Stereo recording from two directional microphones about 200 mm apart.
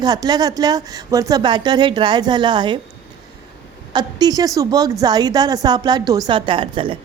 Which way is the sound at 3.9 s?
20° right (ahead or behind).